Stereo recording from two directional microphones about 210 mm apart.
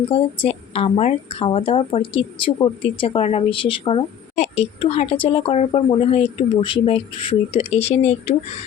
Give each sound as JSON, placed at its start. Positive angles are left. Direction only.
{"t": 0.1, "sound": "speech", "side_deg": 30}